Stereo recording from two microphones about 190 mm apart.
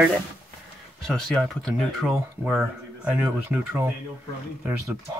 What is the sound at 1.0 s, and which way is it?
Speech, 5° left (ahead or behind).